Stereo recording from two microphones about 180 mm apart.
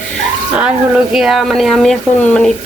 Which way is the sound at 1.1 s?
Centre (ahead or behind).